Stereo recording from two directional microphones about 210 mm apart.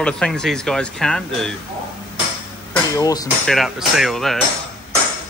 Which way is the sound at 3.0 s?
15° left (ahead or behind).